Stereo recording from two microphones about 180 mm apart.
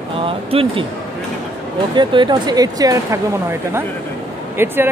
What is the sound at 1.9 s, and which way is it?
Speech, 25° right (ahead or behind).